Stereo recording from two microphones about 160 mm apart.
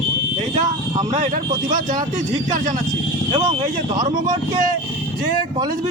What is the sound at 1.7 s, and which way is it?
Speech, 55° right (ahead or behind).